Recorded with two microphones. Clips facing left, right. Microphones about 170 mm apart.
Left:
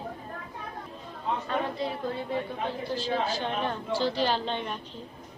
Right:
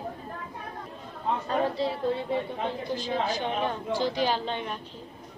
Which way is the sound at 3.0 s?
15° right (ahead or behind).